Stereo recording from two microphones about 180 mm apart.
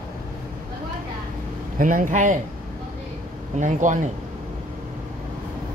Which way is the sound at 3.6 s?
45° right (ahead or behind).